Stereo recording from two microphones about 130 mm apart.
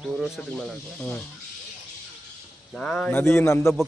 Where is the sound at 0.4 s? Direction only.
5° left (ahead or behind).